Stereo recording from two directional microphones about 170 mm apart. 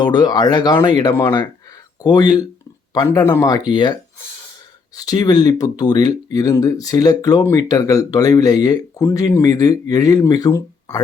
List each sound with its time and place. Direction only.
0.0 s speech: 25° left (ahead or behind)
4.9 s speech: 20° left (ahead or behind)